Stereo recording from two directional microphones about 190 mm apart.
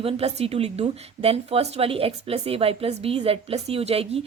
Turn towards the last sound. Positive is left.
turn(degrees=-30)  # may be behind; listen again after turning